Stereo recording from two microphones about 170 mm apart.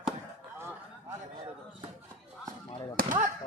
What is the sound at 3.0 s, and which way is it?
Speech, 50° right (ahead or behind).